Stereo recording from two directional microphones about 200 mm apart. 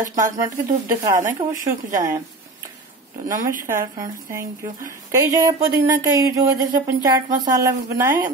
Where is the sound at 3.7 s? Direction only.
15° right (ahead or behind).